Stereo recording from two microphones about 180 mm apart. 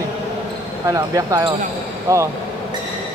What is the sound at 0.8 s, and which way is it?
Speech, 20° right (ahead or behind).